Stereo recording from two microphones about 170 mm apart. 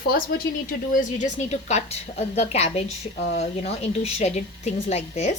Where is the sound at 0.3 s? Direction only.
75° left (ahead or behind).